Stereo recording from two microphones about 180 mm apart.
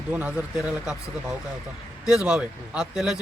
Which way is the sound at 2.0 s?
5° right (ahead or behind).